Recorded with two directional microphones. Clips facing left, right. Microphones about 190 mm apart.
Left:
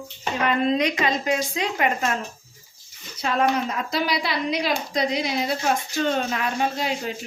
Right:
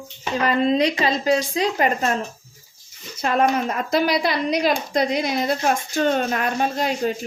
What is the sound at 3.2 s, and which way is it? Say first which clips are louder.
A woman's voice: right 3 dB; 55° right (ahead or behind).